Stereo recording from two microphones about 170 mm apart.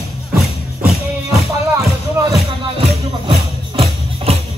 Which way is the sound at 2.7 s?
35° right (ahead or behind).